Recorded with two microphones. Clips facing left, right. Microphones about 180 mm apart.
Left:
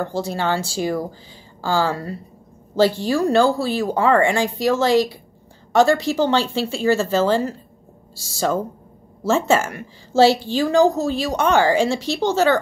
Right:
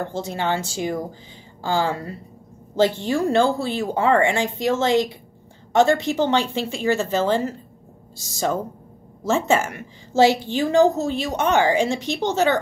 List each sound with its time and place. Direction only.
0.1 s a woman's voice: 20° right (ahead or behind)